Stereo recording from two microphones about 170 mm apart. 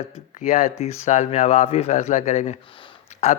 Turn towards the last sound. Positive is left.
turn(degrees=45)  # may be behind; listen again after turning